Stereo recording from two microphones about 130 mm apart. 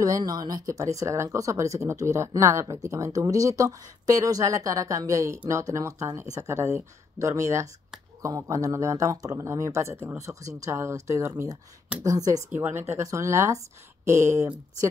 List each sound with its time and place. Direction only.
0.0 s speech: 30° right (ahead or behind)